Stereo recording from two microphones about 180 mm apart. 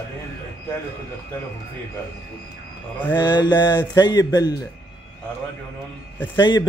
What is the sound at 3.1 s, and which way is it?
Mantra, 25° left (ahead or behind).